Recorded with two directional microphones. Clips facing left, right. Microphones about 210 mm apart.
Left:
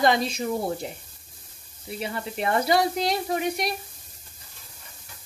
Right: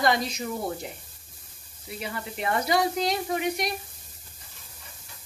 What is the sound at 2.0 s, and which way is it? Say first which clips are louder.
Speech: left 3 dB; 30° left (ahead or behind).